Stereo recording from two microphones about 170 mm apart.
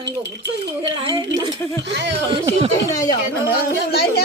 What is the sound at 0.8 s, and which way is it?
Speech, 30° right (ahead or behind).